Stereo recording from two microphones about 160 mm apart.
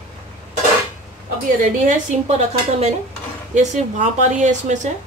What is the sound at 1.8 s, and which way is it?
A woman's voice, 45° right (ahead or behind).